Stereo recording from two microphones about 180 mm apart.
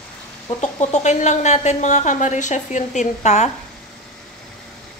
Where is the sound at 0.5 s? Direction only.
40° left (ahead or behind).